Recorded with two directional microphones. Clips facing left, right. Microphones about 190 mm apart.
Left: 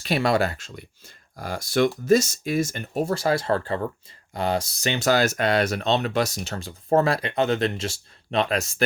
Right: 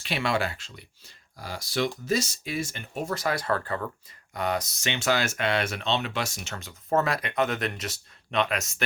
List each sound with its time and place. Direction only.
0.0 s speech: 40° left (ahead or behind)